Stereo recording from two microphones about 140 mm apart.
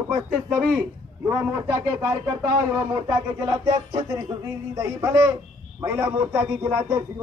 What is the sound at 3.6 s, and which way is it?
A man's voice, 30° right (ahead or behind).